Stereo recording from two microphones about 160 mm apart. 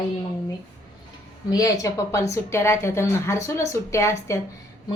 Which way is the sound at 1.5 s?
20° left (ahead or behind).